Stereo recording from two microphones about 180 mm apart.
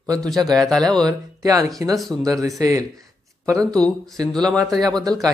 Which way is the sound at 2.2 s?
20° right (ahead or behind).